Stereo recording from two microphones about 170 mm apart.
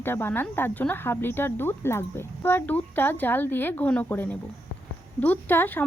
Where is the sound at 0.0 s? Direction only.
15° left (ahead or behind).